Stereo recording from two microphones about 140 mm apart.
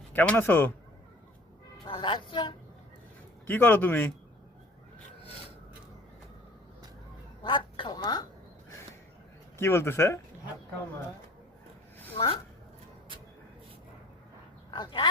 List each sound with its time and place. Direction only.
0.1 s speech: 15° left (ahead or behind)
1.9 s a woman's voice: 35° left (ahead or behind)
3.4 s speech: 15° left (ahead or behind)
7.4 s speech: 35° left (ahead or behind)
9.6 s speech: 15° left (ahead or behind)
12.1 s speech: 40° left (ahead or behind)
14.7 s speech: 35° left (ahead or behind)